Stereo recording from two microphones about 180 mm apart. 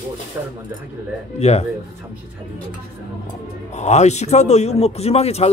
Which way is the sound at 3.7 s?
40° left (ahead or behind).